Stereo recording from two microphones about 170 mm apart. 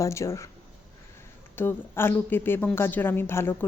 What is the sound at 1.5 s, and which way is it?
A woman's voice, 10° left (ahead or behind).